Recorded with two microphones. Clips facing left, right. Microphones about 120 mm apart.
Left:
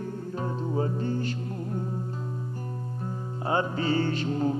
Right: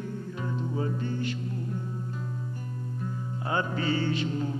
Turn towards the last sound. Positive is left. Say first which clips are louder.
# left 3 dB
turn(degrees=45)  # may be behind; listen again after turning